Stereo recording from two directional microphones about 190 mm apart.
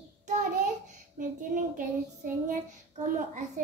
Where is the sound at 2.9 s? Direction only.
40° right (ahead or behind).